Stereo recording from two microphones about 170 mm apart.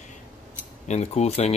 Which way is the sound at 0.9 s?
40° left (ahead or behind).